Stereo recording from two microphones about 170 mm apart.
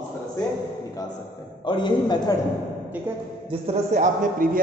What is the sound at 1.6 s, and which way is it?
Speech, 30° left (ahead or behind).